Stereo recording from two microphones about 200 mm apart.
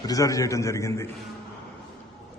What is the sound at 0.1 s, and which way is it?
Speech, 15° left (ahead or behind).